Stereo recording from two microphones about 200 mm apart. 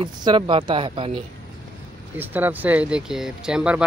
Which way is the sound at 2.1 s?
10° right (ahead or behind).